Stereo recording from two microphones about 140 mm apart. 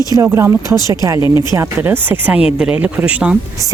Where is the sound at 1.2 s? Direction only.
30° left (ahead or behind).